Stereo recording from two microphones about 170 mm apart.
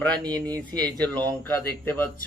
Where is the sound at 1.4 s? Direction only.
10° left (ahead or behind).